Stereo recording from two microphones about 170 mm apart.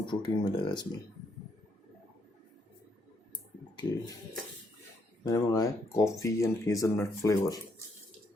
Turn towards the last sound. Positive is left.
turn(degrees=20)  # may be behind; listen again after turning